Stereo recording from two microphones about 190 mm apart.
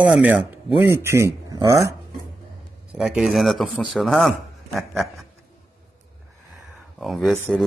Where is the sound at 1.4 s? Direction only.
20° right (ahead or behind).